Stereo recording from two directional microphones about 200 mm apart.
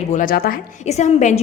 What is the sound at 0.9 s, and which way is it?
Speech, 35° left (ahead or behind).